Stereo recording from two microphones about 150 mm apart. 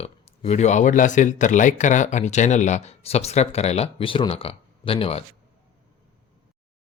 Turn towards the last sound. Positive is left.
turn(degrees=40)  # may be behind; listen again after turning